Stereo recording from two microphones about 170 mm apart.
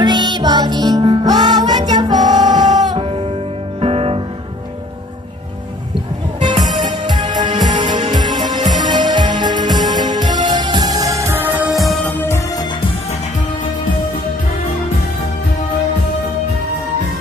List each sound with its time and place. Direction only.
0.0 s music: 25° right (ahead or behind)
6.8 s music: 25° right (ahead or behind)
11.7 s music: centre (ahead or behind)